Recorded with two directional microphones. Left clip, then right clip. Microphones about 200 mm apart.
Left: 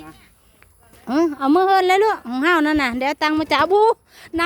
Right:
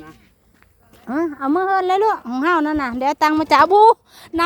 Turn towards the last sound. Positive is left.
turn(degrees=-15)  # may be behind; listen again after turning